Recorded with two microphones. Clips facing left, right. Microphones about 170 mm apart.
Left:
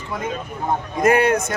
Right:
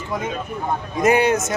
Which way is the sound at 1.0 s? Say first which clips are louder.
Even; centre (ahead or behind).